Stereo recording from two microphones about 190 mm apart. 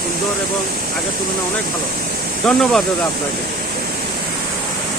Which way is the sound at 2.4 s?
Centre (ahead or behind).